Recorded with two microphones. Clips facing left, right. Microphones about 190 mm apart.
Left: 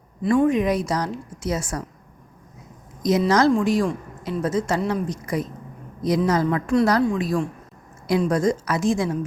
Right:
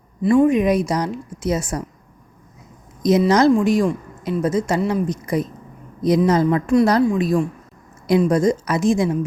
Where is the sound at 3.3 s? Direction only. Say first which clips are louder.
Right 2 dB; 15° right (ahead or behind).